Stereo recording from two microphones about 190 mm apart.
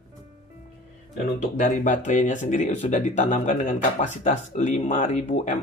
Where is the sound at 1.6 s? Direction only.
45° left (ahead or behind).